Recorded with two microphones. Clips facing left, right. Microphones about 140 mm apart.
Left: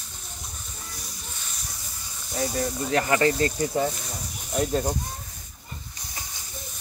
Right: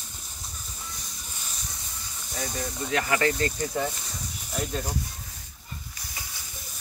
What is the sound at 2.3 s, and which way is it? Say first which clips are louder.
Speech: left 6 dB; 30° left (ahead or behind).